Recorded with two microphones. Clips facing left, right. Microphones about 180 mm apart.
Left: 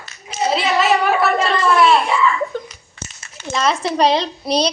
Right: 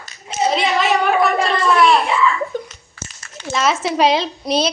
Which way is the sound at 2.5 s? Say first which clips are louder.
Right 1 dB; 15° right (ahead or behind).